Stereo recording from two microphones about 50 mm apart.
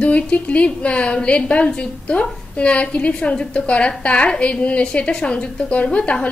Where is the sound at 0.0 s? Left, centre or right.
Left.